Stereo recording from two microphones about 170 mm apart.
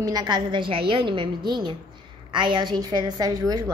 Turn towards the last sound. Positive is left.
turn(degrees=-20)  # may be behind; listen again after turning